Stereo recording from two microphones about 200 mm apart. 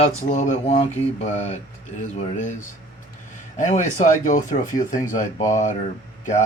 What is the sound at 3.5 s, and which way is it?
Speech, 40° left (ahead or behind).